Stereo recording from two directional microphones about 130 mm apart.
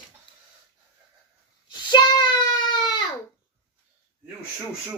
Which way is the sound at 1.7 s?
35° left (ahead or behind).